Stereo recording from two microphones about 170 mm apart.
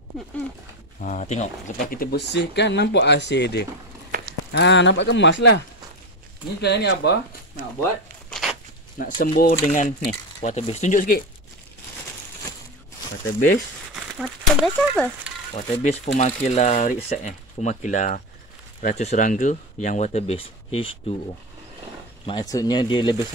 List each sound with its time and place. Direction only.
1.0 s speech: 45° left (ahead or behind); by 5.6 s 90° left
6.6 s speech: 80° left
8.3 s a sound: centre (ahead or behind)
9.2 s speech: 60° left (ahead or behind)
9.6 s speech: 45° left (ahead or behind)
14.1 s speech: centre (ahead or behind)
15.5 s speech: 40° left (ahead or behind)
22.2 s speech: 25° left (ahead or behind)